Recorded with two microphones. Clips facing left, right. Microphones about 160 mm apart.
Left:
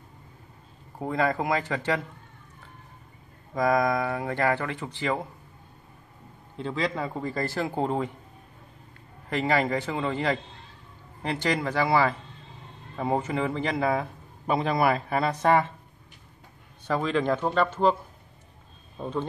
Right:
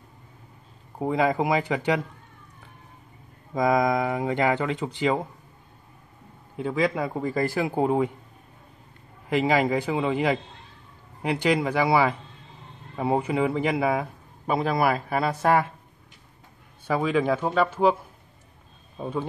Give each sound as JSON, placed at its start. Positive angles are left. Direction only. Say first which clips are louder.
{"t": 0.9, "sound": "a man's voice", "louder": "right 3 dB", "side_deg": -15}
{"t": 3.5, "sound": "a man's voice", "louder": "right 2 dB", "side_deg": -20}
{"t": 6.5, "sound": "a man's voice", "louder": "right 4 dB", "side_deg": -10}
{"t": 9.3, "sound": "a man's voice", "louder": "right 3 dB", "side_deg": -15}
{"t": 16.8, "sound": "a man's voice", "louder": "right 2 dB", "side_deg": -10}
{"t": 18.9, "sound": "a man's voice", "louder": "right 1 dB", "side_deg": -10}